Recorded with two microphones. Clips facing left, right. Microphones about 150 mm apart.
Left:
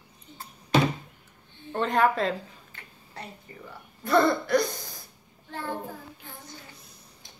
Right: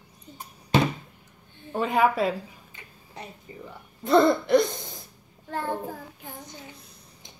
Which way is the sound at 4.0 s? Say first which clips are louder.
Right 3 dB; 20° right (ahead or behind).